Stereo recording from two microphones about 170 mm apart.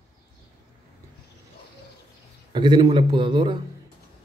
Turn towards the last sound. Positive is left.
turn(degrees=-25)  # may be behind; listen again after turning